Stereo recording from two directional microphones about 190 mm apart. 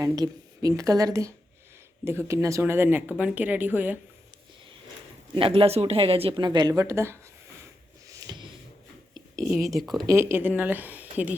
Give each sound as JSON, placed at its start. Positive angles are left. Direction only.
{"t": 0.0, "sound": "speech", "side_deg": -20}
{"t": 5.3, "sound": "speech", "side_deg": -30}
{"t": 8.1, "sound": "a sound", "side_deg": -20}
{"t": 9.1, "sound": "whispering", "side_deg": -15}
{"t": 9.7, "sound": "speech", "side_deg": 0}
{"t": 10.1, "sound": "speech", "side_deg": -15}